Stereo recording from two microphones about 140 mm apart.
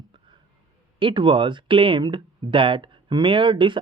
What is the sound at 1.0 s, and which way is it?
Speech, 35° right (ahead or behind).